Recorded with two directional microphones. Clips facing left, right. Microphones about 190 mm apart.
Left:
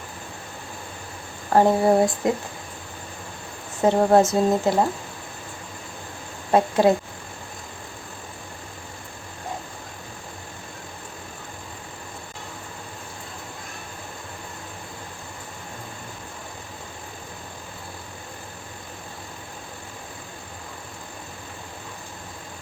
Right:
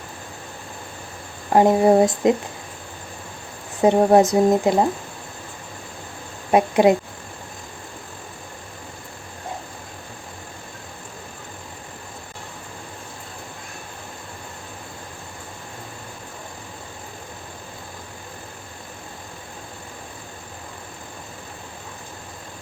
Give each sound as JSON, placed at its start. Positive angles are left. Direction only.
{"t": 1.5, "sound": "speech", "side_deg": -20}
{"t": 3.8, "sound": "speech", "side_deg": -15}
{"t": 6.5, "sound": "speech", "side_deg": -15}